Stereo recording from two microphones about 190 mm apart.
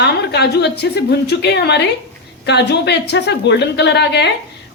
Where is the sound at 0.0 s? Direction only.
60° left (ahead or behind).